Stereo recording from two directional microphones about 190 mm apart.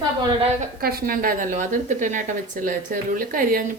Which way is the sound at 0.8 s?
50° right (ahead or behind).